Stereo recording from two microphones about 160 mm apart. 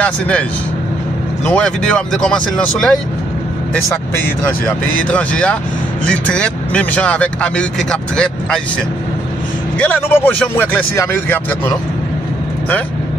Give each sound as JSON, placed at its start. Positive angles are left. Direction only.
{"t": 0.0, "sound": "speech", "side_deg": 5}
{"t": 4.4, "sound": "speech", "side_deg": 10}
{"t": 9.8, "sound": "speech", "side_deg": 10}